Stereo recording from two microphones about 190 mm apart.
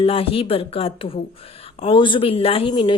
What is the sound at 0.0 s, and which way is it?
A woman's voice, 30° left (ahead or behind).